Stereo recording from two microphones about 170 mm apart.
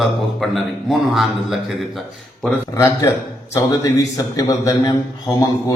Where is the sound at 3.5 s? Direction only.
20° left (ahead or behind).